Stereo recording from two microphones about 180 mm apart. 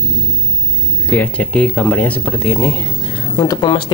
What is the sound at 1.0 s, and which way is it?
Speech, 10° left (ahead or behind).